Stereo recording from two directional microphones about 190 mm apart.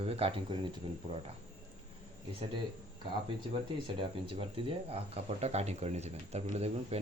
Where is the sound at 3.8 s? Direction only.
25° right (ahead or behind).